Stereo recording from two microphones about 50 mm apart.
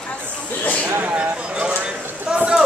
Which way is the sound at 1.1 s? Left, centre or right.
Right.